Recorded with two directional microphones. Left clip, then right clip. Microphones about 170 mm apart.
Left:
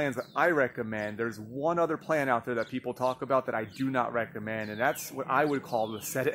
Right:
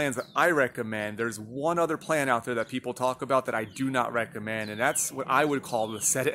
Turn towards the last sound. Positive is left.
turn(degrees=-5)  # may be behind; listen again after turning